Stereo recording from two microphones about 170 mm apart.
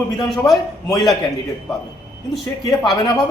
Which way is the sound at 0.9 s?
20° left (ahead or behind).